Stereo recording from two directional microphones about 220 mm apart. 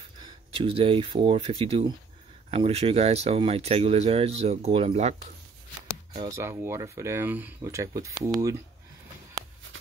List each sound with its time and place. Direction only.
0.2 s speech: 25° right (ahead or behind)
6.1 s speech: 15° right (ahead or behind)